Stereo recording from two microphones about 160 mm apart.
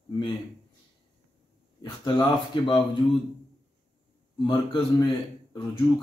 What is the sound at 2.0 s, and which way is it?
Speech, 30° left (ahead or behind).